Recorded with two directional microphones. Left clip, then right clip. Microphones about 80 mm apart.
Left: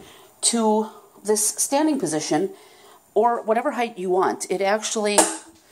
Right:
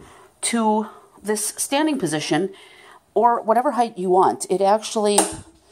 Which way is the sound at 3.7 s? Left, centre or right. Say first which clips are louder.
Right 4 dB; right.